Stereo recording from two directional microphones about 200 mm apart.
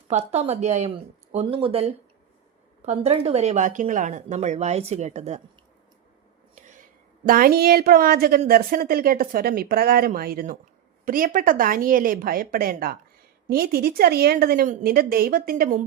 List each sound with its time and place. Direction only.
0.1 s speech: 35° right (ahead or behind)
7.3 s a woman's voice: 45° right (ahead or behind)